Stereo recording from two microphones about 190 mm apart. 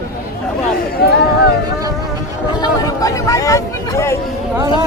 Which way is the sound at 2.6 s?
20° left (ahead or behind).